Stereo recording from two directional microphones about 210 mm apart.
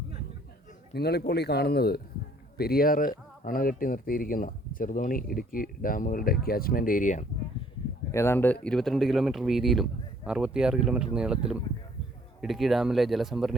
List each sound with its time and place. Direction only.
0.9 s a man's voice: 50° left (ahead or behind)
8.1 s a man's voice: 10° left (ahead or behind)